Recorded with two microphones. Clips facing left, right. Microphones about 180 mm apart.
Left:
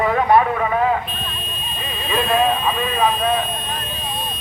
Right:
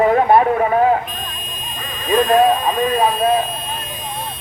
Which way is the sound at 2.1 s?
40° right (ahead or behind).